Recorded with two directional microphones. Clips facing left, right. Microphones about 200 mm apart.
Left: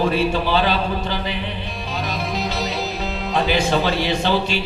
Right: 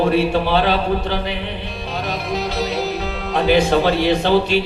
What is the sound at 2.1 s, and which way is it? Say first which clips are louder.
Music: right 3 dB; 60° right (ahead or behind).